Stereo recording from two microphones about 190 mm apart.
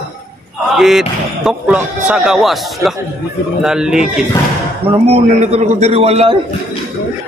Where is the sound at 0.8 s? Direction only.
Centre (ahead or behind).